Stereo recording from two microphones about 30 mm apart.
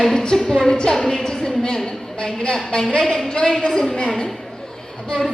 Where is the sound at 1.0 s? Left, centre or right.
Centre.